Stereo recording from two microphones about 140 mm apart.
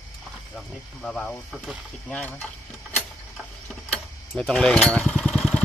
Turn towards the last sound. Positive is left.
turn(degrees=5)  # may be behind; listen again after turning